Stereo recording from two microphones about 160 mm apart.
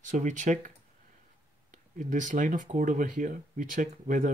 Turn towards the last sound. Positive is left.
turn(degrees=-55)  # may be behind; listen again after turning